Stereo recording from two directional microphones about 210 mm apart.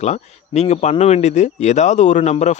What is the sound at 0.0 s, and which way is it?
Speech, 30° left (ahead or behind).